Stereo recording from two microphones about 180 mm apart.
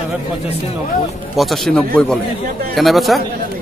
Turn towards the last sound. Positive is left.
turn(degrees=0)  # may be behind; listen again after turning